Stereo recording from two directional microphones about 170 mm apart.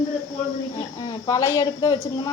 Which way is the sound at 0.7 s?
25° left (ahead or behind).